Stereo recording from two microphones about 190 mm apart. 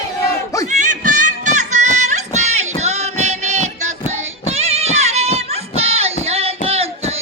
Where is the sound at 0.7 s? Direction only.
40° right (ahead or behind).